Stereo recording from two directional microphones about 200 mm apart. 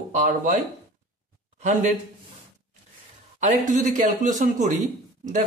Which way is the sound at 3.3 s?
40° right (ahead or behind).